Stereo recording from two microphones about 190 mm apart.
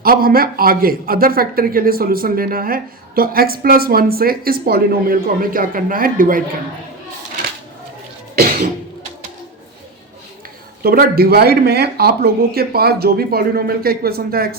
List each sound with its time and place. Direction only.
0.0 s speech: 50° right (ahead or behind)
10.8 s speech: 50° right (ahead or behind)